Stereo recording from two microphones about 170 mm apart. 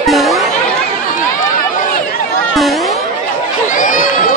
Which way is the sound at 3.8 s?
50° left (ahead or behind).